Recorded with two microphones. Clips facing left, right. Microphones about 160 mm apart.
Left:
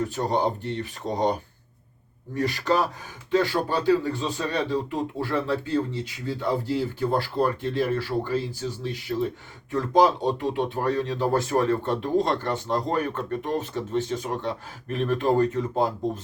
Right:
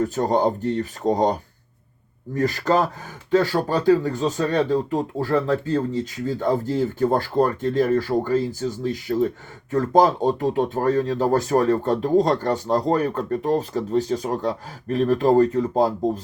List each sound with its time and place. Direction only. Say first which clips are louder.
0.0 s speech: right 5 dB; 45° right (ahead or behind)